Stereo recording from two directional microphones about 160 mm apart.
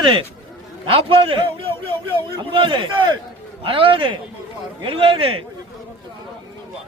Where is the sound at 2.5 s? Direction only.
30° right (ahead or behind).